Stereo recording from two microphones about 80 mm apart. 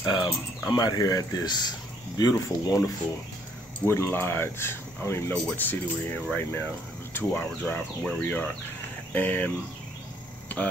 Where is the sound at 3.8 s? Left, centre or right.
Left.